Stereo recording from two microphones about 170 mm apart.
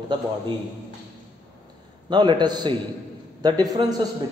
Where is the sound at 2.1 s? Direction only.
25° right (ahead or behind).